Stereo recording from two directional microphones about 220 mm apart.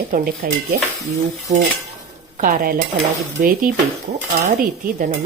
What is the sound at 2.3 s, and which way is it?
Speech, 40° right (ahead or behind).